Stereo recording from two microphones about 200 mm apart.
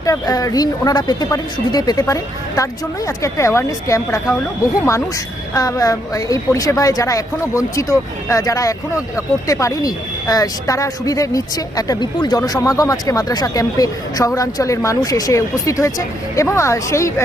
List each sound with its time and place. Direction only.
0.0 s speech: 15° left (ahead or behind)